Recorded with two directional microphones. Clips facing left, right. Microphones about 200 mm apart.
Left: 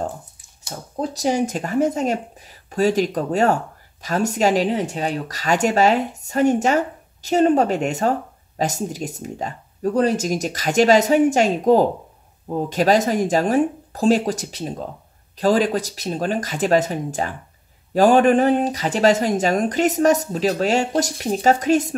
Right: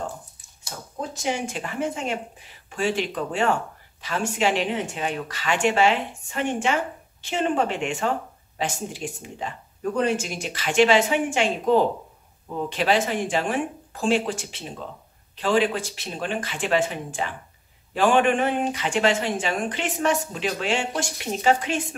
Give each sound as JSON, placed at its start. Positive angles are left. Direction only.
{"t": 1.1, "sound": "speech", "side_deg": 40}